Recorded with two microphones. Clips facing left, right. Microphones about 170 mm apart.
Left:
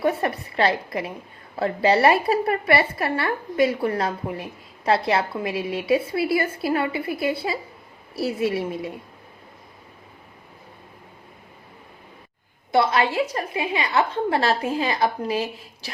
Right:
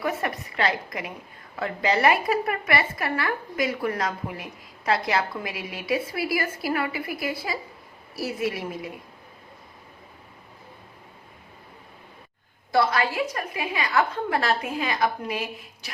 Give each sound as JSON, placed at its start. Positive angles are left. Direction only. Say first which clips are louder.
{"t": 0.0, "sound": "a woman's voice", "louder": "left 5 dB", "side_deg": 30}
{"t": 12.7, "sound": "a woman's voice", "louder": "left 3 dB", "side_deg": 25}